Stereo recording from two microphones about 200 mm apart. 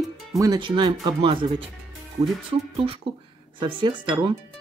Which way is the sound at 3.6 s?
25° right (ahead or behind).